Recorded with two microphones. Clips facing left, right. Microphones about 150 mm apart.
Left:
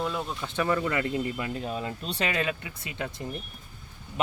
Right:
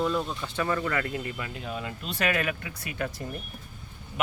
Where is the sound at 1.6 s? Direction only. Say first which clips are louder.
Left 3 dB; 35° left (ahead or behind).